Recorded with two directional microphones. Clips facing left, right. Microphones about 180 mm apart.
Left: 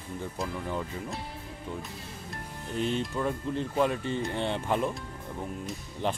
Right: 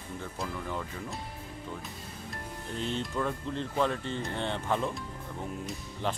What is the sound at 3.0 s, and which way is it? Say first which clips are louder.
Speech: left 2 dB; 10° left (ahead or behind).